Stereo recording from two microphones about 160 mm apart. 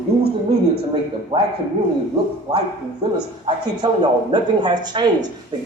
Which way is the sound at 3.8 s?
30° right (ahead or behind).